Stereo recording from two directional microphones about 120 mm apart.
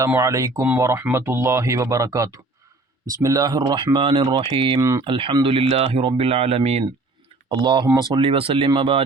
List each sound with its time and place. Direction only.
0.1 s speech: 25° right (ahead or behind); by 4.8 s 45° right (ahead or behind)
4.8 s speech: 30° right (ahead or behind)
5.0 s speech: 45° right (ahead or behind); by 6.8 s 60° right (ahead or behind)
7.5 s speech: 40° right (ahead or behind)